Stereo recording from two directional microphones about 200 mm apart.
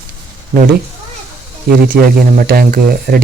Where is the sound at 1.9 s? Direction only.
45° right (ahead or behind).